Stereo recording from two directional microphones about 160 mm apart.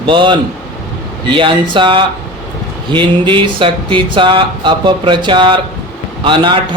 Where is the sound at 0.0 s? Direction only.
30° right (ahead or behind).